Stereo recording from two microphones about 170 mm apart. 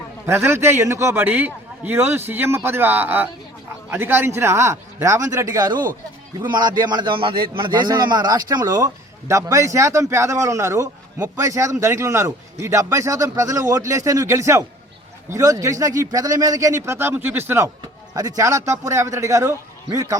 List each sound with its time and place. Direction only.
0.3 s a man's voice: 15° right (ahead or behind)